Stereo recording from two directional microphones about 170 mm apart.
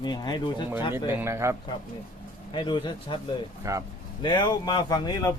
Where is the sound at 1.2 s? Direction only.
15° right (ahead or behind).